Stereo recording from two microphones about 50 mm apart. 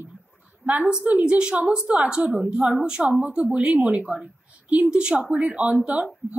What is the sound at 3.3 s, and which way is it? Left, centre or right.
A woman's voice, right.